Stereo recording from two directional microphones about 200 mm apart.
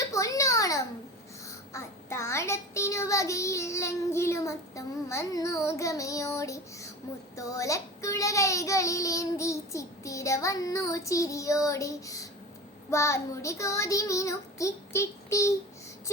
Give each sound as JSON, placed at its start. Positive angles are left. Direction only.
{"t": 0.1, "sound": "a sound", "side_deg": 15}
{"t": 1.5, "sound": "child singing", "side_deg": 15}
{"t": 7.3, "sound": "a child's voice", "side_deg": 15}